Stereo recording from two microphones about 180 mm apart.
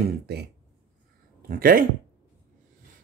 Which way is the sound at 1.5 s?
50° right (ahead or behind).